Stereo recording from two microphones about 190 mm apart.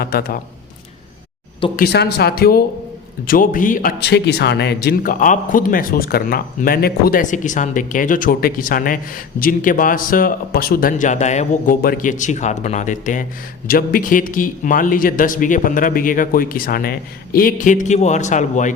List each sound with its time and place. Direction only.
0.0 s speech: 55° left (ahead or behind)
1.7 s speech: 55° left (ahead or behind); by 18.7 s 40° left (ahead or behind)